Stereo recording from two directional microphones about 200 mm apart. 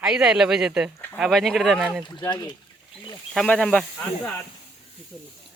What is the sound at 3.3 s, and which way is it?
Speech, 5° left (ahead or behind).